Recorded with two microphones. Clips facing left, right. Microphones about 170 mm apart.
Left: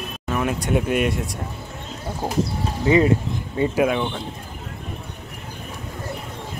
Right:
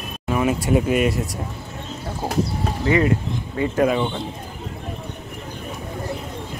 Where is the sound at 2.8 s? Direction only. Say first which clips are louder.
Left 2 dB; 20° left (ahead or behind).